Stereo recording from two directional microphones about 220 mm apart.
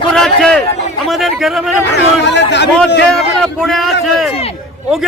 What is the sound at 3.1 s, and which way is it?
A man's voice, centre (ahead or behind).